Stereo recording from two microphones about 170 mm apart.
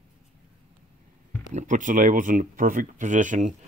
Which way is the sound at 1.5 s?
45° right (ahead or behind).